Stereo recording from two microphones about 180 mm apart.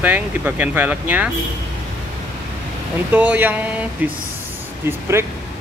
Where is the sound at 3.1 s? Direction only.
10° right (ahead or behind).